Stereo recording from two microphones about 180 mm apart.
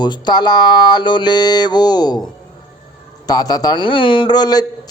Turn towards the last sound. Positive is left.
turn(degrees=20)  # may be behind; listen again after turning